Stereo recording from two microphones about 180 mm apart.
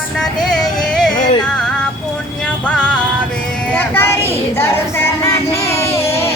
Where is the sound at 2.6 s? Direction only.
5° left (ahead or behind).